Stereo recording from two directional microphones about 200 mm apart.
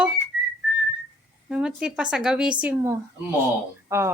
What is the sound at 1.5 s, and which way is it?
A woman's voice, 5° right (ahead or behind).